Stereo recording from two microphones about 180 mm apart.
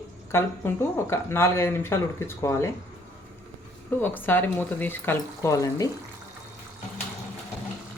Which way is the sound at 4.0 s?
10° left (ahead or behind).